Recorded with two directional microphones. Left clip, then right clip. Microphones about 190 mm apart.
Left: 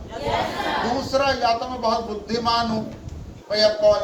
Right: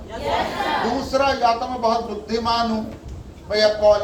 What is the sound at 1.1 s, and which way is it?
Speech, 35° left (ahead or behind).